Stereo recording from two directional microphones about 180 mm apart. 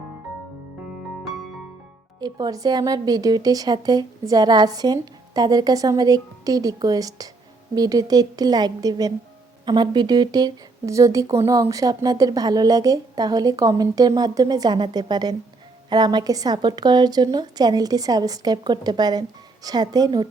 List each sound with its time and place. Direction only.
2.2 s speech: 20° right (ahead or behind)